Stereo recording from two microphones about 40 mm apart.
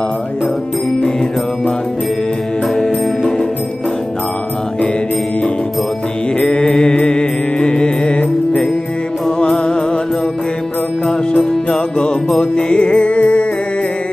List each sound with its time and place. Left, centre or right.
2.7 s music: centre
6.4 s mantra: centre
6.7 s music: left
11.1 s music: centre; by 13.5 s left